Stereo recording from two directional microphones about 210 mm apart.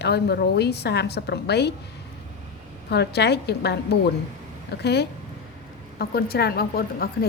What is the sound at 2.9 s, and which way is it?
A woman's voice, 50° left (ahead or behind).